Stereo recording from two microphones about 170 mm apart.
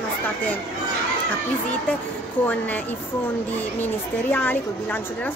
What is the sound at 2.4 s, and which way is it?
Speech, 10° left (ahead or behind).